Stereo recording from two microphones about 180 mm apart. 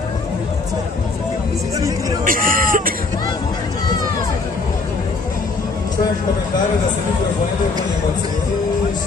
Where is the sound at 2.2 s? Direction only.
50° right (ahead or behind).